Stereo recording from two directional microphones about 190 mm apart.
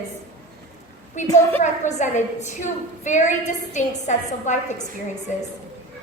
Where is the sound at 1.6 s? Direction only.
40° left (ahead or behind).